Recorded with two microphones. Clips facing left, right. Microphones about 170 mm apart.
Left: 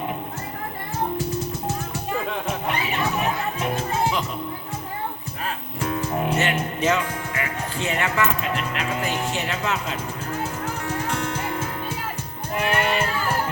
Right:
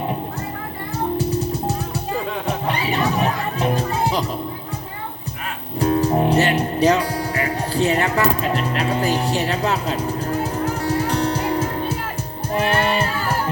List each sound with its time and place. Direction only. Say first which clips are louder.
2.6 s music: right 5 dB; 30° right (ahead or behind)
5.8 s music: right 8 dB; 35° right (ahead or behind)